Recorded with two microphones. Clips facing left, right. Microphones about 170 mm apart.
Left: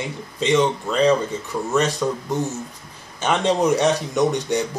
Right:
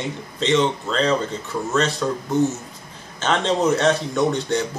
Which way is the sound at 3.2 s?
15° left (ahead or behind).